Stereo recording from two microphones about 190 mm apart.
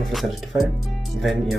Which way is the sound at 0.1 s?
Centre (ahead or behind).